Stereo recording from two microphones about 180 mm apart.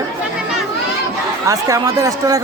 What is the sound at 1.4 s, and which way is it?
Speech, 20° right (ahead or behind).